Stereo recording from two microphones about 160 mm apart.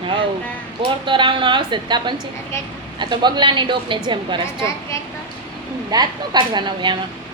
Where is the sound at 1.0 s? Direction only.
30° right (ahead or behind).